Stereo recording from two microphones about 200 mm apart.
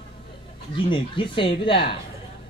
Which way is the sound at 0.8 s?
25° left (ahead or behind).